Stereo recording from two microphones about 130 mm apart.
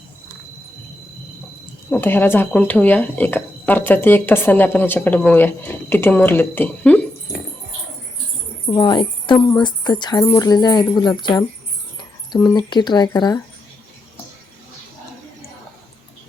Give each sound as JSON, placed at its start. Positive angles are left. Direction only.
{"t": 1.9, "sound": "speech", "side_deg": 15}
{"t": 8.7, "sound": "speech", "side_deg": 35}